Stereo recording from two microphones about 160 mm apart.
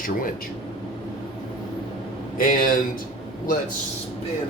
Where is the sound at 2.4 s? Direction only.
60° left (ahead or behind).